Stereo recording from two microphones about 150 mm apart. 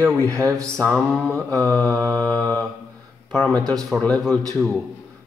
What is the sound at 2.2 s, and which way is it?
Speech, 10° left (ahead or behind).